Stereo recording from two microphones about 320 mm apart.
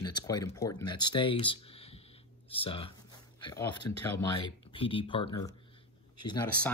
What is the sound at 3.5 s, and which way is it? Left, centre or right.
Speech, centre.